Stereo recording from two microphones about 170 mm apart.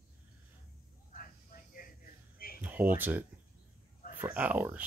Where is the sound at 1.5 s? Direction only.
55° left (ahead or behind).